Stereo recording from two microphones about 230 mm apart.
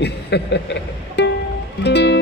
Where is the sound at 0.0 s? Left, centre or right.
Left.